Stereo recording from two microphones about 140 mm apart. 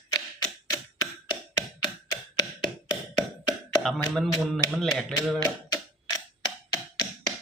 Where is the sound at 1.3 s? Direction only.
30° left (ahead or behind).